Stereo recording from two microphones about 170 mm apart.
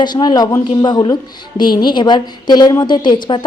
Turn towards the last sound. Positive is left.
turn(degrees=25)  # may be behind; listen again after turning